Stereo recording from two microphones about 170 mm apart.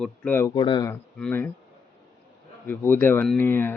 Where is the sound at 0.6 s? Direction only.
25° left (ahead or behind).